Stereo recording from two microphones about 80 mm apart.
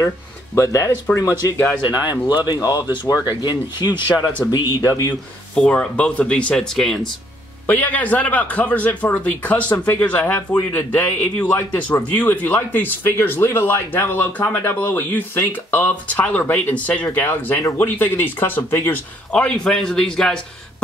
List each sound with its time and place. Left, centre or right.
0.6 s speech: left
2.0 s speech: left
2.8 s speech: right
3.3 s speech: left
4.2 s speech: centre
4.5 s speech: left
5.5 s speech: centre
7.6 s speech: left
19.3 s speech: centre